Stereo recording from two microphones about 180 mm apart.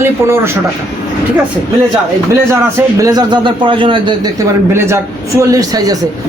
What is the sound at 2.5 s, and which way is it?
A man's voice, 15° right (ahead or behind).